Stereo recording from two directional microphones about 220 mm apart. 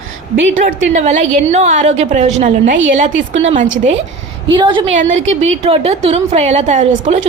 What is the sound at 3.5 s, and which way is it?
Speech, 35° right (ahead or behind).